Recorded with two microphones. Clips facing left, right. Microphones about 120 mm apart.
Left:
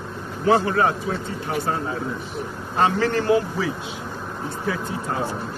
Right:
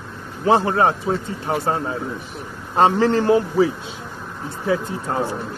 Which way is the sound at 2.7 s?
25° right (ahead or behind).